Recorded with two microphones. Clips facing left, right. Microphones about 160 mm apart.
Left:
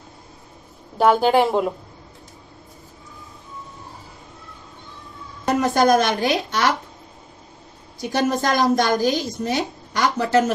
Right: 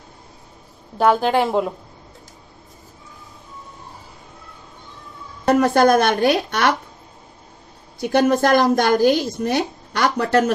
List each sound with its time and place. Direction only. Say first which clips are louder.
0.9 s a woman's voice: left 1 dB; centre (ahead or behind)
5.5 s a woman's voice: right 3 dB; 55° right (ahead or behind)
8.0 s a woman's voice: right 5 dB; 55° right (ahead or behind)